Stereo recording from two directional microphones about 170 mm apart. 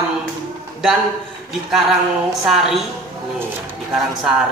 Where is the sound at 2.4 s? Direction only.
Centre (ahead or behind).